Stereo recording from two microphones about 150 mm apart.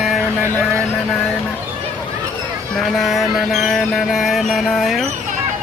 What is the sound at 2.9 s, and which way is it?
Mantra, centre (ahead or behind).